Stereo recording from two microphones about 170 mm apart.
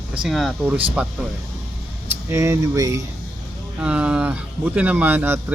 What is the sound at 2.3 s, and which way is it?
Speech, 15° right (ahead or behind).